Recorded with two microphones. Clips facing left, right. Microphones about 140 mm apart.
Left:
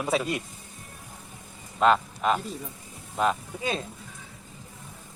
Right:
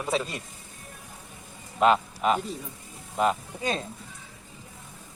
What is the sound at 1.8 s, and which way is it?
Speech, 5° right (ahead or behind).